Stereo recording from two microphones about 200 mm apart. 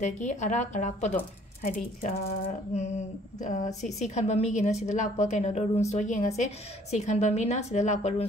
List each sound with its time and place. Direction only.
0.0 s speech: 35° left (ahead or behind)